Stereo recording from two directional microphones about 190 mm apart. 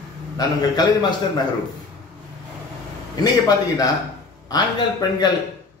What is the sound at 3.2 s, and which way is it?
A man's voice, 20° left (ahead or behind).